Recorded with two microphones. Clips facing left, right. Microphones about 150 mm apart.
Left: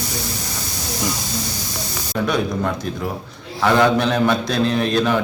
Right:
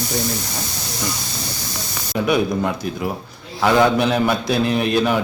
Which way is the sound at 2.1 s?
10° right (ahead or behind).